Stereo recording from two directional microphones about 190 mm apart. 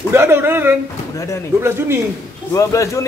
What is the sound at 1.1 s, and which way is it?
Speech, 15° left (ahead or behind).